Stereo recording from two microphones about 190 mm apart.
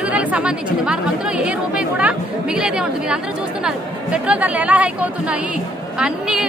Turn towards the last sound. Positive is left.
turn(degrees=-5)  # may be behind; listen again after turning